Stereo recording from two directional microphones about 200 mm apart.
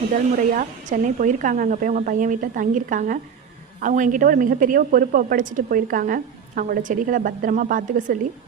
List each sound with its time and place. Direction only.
0.1 s a woman's voice: 40° right (ahead or behind)